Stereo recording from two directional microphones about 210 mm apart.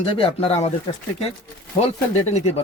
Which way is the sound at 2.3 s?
30° left (ahead or behind).